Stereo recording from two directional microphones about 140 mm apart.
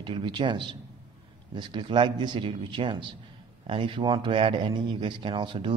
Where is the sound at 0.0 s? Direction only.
35° right (ahead or behind).